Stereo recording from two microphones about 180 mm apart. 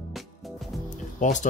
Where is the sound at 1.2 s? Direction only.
45° left (ahead or behind).